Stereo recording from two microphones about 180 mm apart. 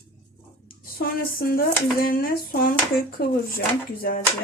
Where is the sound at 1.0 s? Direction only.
55° left (ahead or behind).